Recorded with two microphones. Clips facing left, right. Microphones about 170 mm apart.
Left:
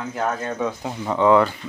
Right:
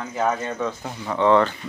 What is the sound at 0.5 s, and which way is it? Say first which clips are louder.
Speech: left 2 dB; 15° left (ahead or behind).